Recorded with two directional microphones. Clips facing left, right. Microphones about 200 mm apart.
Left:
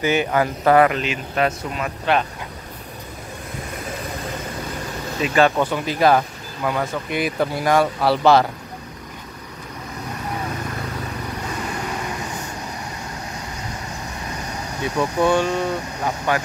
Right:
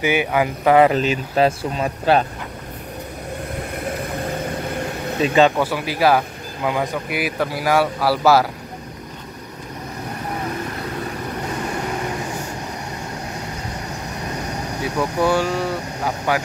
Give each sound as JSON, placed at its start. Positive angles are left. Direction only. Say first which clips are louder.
{"t": 0.0, "sound": "speech", "louder": "even", "side_deg": -10}
{"t": 0.8, "sound": "speech", "louder": "right 4 dB", "side_deg": -35}
{"t": 5.2, "sound": "speech", "louder": "right 2 dB", "side_deg": -20}
{"t": 5.6, "sound": "speech", "louder": "even", "side_deg": -5}
{"t": 7.2, "sound": "speech", "louder": "left 2 dB", "side_deg": -5}
{"t": 15.0, "sound": "speech", "louder": "left 1 dB", "side_deg": -5}